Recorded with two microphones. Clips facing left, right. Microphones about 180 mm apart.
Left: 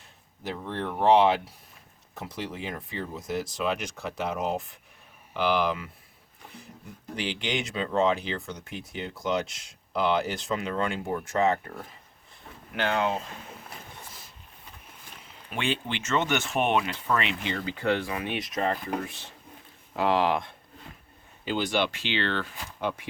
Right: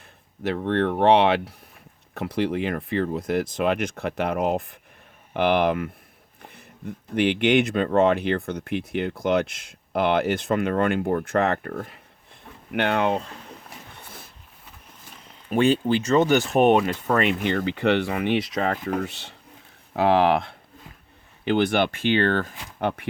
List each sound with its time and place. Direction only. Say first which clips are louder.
0.4 s speech: right 10 dB; 70° right (ahead or behind)
7.2 s speech: right 12 dB; 60° right (ahead or behind)
14.0 s a sound: right 3 dB; 60° right (ahead or behind)
15.4 s speech: right 11 dB; 40° right (ahead or behind); by 20.6 s 70° right (ahead or behind)
21.4 s speech: right 6 dB; 60° right (ahead or behind)
22.8 s speech: right 5 dB; 60° right (ahead or behind)